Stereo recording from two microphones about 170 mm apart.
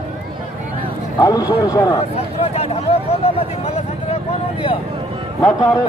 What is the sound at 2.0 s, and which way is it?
Speech, 35° left (ahead or behind).